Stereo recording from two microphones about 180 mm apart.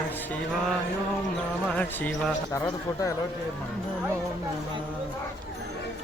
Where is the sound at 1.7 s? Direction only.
10° left (ahead or behind).